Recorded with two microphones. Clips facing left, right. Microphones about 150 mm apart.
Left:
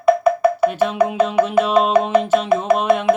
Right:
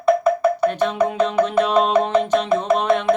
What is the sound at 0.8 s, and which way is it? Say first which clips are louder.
Music: left 2 dB; 5° left (ahead or behind).